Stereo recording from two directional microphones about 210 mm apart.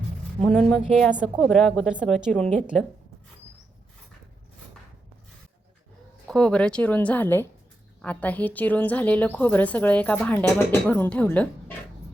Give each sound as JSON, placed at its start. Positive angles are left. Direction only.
{"t": 0.4, "sound": "speech", "side_deg": 5}
{"t": 6.2, "sound": "a woman's voice", "side_deg": 5}